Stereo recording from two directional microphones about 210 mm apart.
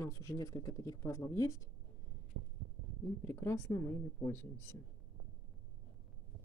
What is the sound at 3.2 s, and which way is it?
Speech, 10° left (ahead or behind).